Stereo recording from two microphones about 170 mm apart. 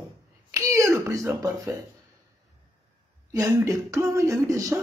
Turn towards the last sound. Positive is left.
turn(degrees=-20)  # may be behind; listen again after turning